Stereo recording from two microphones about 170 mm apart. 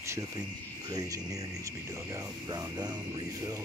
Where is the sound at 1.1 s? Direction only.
20° right (ahead or behind).